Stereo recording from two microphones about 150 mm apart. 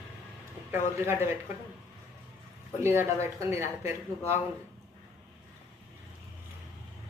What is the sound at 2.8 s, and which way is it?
Speech, 15° right (ahead or behind).